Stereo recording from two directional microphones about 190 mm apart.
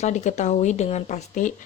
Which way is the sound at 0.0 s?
40° left (ahead or behind).